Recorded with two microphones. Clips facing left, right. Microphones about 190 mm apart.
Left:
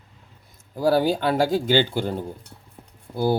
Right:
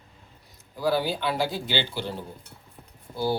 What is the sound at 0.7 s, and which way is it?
Speech, 45° left (ahead or behind).